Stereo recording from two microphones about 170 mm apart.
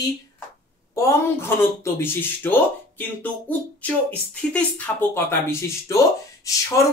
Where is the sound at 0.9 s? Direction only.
15° left (ahead or behind).